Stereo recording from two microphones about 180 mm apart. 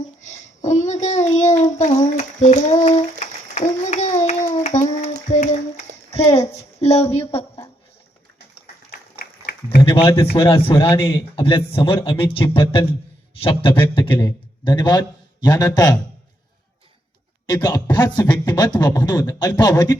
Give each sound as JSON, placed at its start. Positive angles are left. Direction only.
{"t": 0.3, "sound": "a child's voice", "side_deg": 40}
{"t": 1.8, "sound": "a sound", "side_deg": 40}
{"t": 5.3, "sound": "music", "side_deg": 40}
{"t": 6.1, "sound": "a sound", "side_deg": 35}
{"t": 10.3, "sound": "a man's voice", "side_deg": 30}
{"t": 10.9, "sound": "speech", "side_deg": 15}
{"t": 11.3, "sound": "a man's voice", "side_deg": 30}
{"t": 17.4, "sound": "a man's voice", "side_deg": 25}